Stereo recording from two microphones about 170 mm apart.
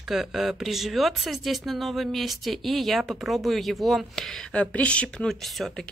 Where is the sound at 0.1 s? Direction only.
Centre (ahead or behind).